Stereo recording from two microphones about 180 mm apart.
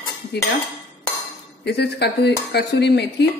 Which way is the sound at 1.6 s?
70° left (ahead or behind).